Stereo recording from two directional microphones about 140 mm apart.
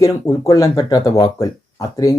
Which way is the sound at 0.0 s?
25° left (ahead or behind).